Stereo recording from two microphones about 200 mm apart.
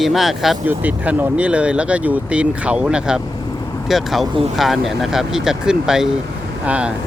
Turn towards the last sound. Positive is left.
turn(degrees=-5)  # may be behind; listen again after turning